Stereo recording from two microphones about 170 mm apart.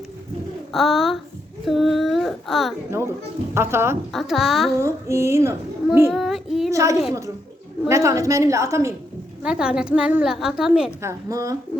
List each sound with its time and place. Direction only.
0.7 s a woman's voice: centre (ahead or behind)
1.6 s child singing: centre (ahead or behind)
3.5 s a child's voice: 15° right (ahead or behind)
4.1 s a woman's voice: centre (ahead or behind)
4.8 s a child's voice: 15° right (ahead or behind)
6.1 s a woman's voice: centre (ahead or behind)
6.7 s a woman's voice: 20° right (ahead or behind)
9.4 s a woman's voice: 5° right (ahead or behind)
11.0 s a woman's voice: 20° right (ahead or behind)